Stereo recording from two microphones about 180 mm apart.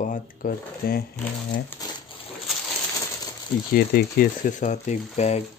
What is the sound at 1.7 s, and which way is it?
Speech, 10° left (ahead or behind).